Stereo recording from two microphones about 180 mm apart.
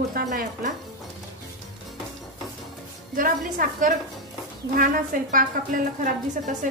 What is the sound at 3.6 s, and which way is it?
A woman's voice, 50° right (ahead or behind).